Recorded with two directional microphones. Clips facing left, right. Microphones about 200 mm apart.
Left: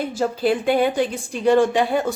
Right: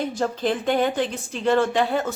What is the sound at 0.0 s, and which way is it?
A woman's voice, 10° left (ahead or behind).